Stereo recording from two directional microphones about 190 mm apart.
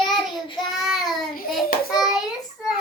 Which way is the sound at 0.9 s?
Centre (ahead or behind).